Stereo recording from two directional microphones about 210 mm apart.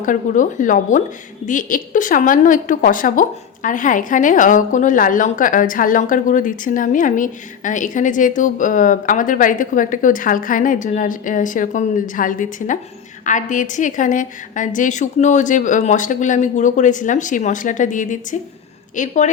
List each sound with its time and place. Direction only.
0.0 s a woman's voice: 40° left (ahead or behind)